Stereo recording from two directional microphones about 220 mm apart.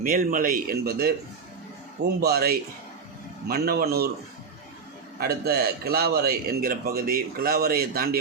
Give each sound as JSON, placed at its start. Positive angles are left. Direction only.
{"t": 0.0, "sound": "speech", "side_deg": -40}
{"t": 2.2, "sound": "a man's voice", "side_deg": -45}
{"t": 5.2, "sound": "a man's voice", "side_deg": -45}